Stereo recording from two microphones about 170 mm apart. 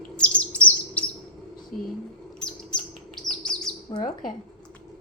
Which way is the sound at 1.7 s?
50° left (ahead or behind).